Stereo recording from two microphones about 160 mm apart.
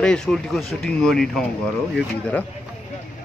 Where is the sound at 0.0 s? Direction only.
5° left (ahead or behind).